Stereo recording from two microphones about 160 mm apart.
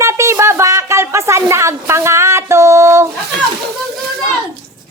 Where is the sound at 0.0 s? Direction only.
20° right (ahead or behind).